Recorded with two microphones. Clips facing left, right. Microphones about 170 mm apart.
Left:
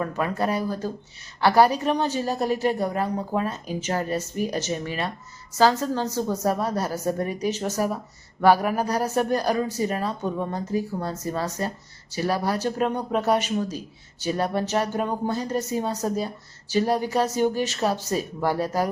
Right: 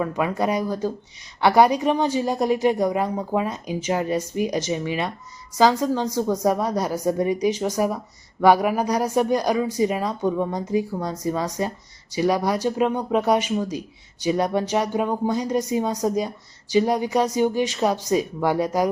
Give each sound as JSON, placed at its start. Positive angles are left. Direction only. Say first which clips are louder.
{"t": 0.0, "sound": "speech", "louder": "right 2 dB", "side_deg": -10}